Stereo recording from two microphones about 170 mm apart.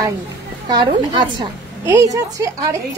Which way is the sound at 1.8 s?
15° right (ahead or behind).